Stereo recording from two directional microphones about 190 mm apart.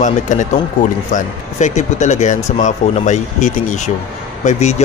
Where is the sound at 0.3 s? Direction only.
40° left (ahead or behind).